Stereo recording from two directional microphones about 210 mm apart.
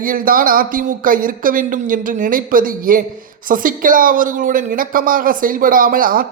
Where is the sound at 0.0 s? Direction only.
40° right (ahead or behind).